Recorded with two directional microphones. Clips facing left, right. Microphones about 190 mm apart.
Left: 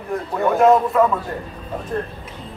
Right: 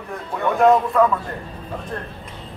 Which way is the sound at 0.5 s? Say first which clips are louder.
Left 1 dB; centre (ahead or behind).